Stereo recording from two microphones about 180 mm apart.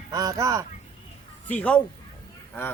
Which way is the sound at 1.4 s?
5° left (ahead or behind).